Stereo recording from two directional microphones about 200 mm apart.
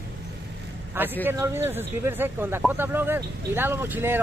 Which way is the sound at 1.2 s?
15° right (ahead or behind).